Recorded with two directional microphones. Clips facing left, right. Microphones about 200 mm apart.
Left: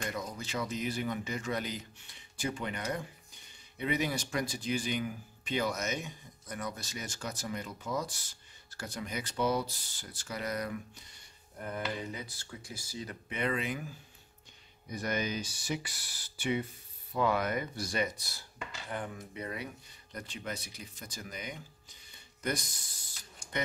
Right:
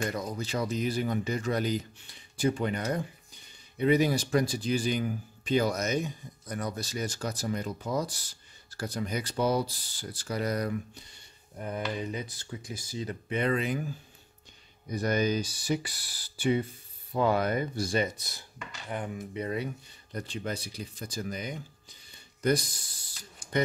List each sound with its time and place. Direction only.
0.1 s speech: 35° right (ahead or behind)
11.5 s speech: 15° right (ahead or behind); by 13.8 s 35° right (ahead or behind)
14.9 s speech: 35° right (ahead or behind)